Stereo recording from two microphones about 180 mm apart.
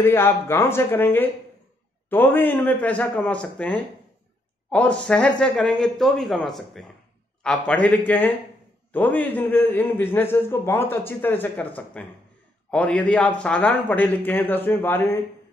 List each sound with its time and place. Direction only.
0.0 s a man's voice: 10° left (ahead or behind)
8.9 s a man's voice: 10° left (ahead or behind)